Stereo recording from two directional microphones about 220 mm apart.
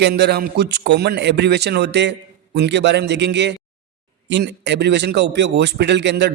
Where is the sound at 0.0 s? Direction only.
50° right (ahead or behind).